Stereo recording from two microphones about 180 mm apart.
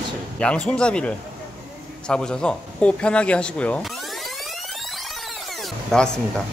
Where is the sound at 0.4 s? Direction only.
5° left (ahead or behind).